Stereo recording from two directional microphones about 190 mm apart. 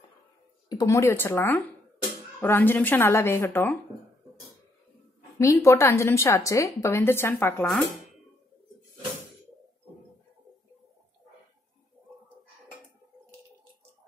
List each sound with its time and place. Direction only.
0.7 s a woman's voice: 20° left (ahead or behind)
5.4 s a woman's voice: 15° left (ahead or behind)
7.6 s speech: centre (ahead or behind)